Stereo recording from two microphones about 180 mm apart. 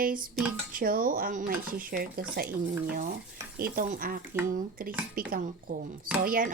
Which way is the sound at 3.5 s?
55° right (ahead or behind).